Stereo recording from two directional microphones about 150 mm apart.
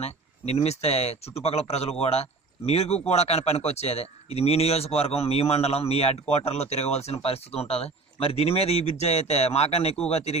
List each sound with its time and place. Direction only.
0.0 s speech: 45° left (ahead or behind)